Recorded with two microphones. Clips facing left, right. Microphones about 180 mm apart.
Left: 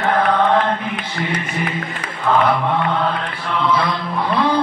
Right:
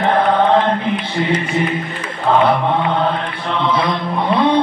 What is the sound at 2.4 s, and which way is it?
Mantra, 25° right (ahead or behind).